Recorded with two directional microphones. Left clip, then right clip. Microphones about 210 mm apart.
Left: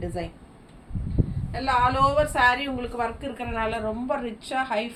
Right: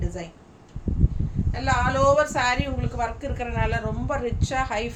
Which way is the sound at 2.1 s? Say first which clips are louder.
Left 1 dB; 20° right (ahead or behind).